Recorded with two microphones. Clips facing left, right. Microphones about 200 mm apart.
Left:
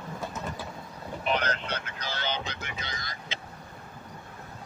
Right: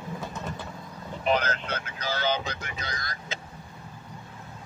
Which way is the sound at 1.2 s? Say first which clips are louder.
Right 3 dB; 40° right (ahead or behind).